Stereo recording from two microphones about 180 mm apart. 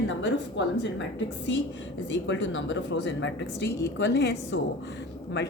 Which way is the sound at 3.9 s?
75° left (ahead or behind).